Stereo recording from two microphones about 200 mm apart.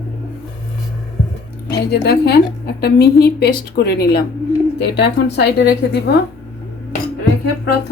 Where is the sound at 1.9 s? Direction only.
55° left (ahead or behind).